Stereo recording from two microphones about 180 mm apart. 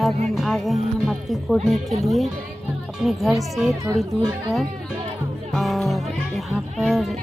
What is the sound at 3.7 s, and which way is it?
Speech, 20° right (ahead or behind).